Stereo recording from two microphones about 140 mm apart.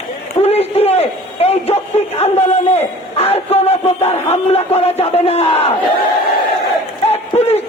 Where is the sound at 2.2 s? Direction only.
50° left (ahead or behind).